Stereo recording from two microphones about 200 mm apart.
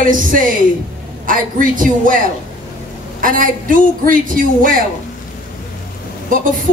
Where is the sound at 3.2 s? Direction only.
45° right (ahead or behind).